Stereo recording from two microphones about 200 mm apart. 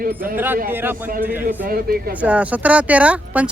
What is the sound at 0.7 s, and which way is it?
Speech, 10° right (ahead or behind).